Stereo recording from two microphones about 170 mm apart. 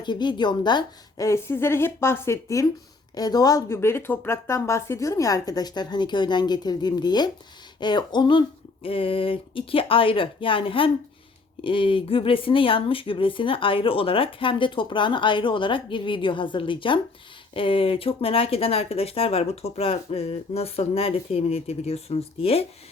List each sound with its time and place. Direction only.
0.0 s a woman's voice: 25° left (ahead or behind)